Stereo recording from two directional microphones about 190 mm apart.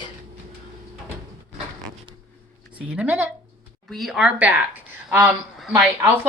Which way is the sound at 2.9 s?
5° right (ahead or behind).